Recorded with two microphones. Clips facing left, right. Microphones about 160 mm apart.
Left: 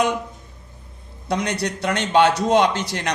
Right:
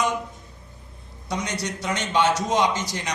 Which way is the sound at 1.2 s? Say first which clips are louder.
Left 5 dB; 65° left (ahead or behind).